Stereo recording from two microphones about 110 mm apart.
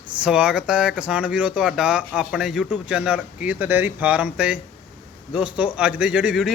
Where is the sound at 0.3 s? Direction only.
10° right (ahead or behind).